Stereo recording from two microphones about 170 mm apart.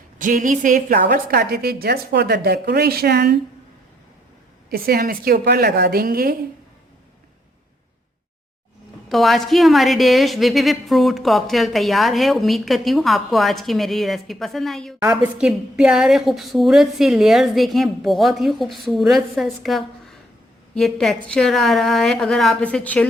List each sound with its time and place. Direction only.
0.2 s a woman's voice: 50° right (ahead or behind)
1.0 s a woman's voice: 70° right (ahead or behind)
4.7 s a woman's voice: 60° right (ahead or behind)
9.0 s a woman's voice: centre (ahead or behind)